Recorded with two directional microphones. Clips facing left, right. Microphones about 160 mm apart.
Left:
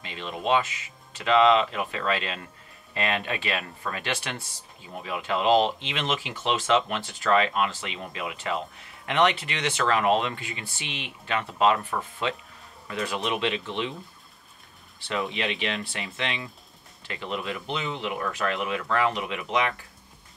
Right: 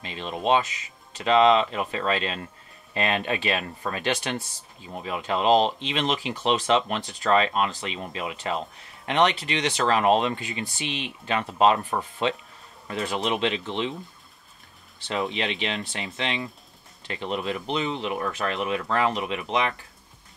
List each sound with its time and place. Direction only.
0.0 s speech: 30° right (ahead or behind)
15.0 s speech: 20° right (ahead or behind)